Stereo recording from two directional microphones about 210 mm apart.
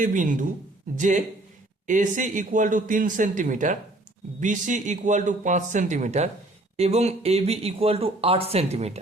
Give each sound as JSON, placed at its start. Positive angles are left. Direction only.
{"t": 0.0, "sound": "speech", "side_deg": -40}